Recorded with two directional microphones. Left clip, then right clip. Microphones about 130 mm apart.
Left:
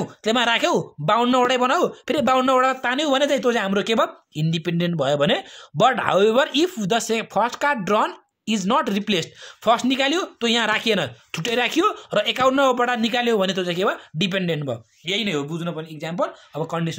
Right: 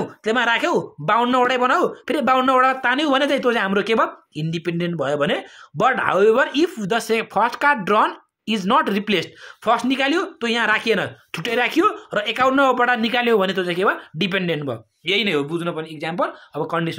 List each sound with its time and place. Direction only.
0.0 s speech: 50° left (ahead or behind)